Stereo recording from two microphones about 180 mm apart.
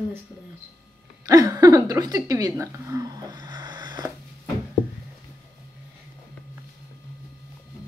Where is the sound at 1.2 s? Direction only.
20° right (ahead or behind).